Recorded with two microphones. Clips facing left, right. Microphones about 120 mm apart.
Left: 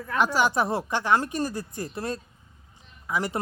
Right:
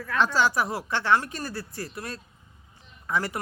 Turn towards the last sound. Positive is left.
turn(degrees=10)  # may be behind; listen again after turning